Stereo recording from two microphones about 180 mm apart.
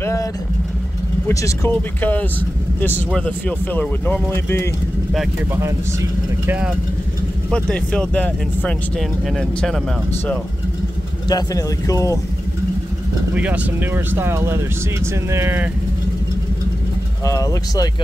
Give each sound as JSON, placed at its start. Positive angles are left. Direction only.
{"t": 0.0, "sound": "vehicle", "side_deg": 15}
{"t": 1.3, "sound": "speech", "side_deg": 15}
{"t": 5.5, "sound": "speech", "side_deg": -15}
{"t": 7.5, "sound": "speech", "side_deg": 5}
{"t": 11.2, "sound": "speech", "side_deg": 20}
{"t": 13.3, "sound": "speech", "side_deg": -10}
{"t": 17.2, "sound": "speech", "side_deg": 20}